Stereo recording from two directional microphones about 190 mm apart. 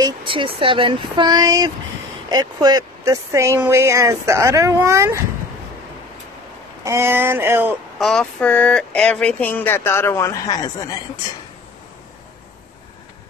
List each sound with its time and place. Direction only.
0.0 s speech: 25° right (ahead or behind)
6.8 s speech: 15° right (ahead or behind)
8.0 s speech: 5° left (ahead or behind)